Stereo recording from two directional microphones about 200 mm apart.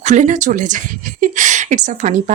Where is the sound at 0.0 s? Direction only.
35° right (ahead or behind).